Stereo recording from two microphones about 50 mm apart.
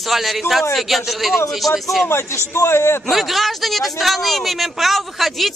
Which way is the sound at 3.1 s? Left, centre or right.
Centre.